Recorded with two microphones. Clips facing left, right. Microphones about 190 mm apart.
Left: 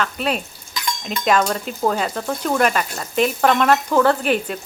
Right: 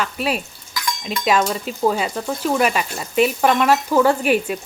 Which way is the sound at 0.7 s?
25° left (ahead or behind).